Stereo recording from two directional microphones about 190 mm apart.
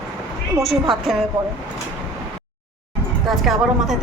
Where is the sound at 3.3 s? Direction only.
Centre (ahead or behind).